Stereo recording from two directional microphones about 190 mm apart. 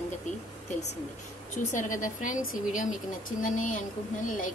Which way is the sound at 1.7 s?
45° left (ahead or behind).